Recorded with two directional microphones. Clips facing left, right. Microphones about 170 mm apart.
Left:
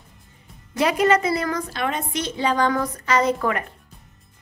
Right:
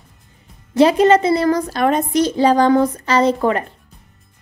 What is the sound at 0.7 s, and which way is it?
A woman's voice, 30° right (ahead or behind).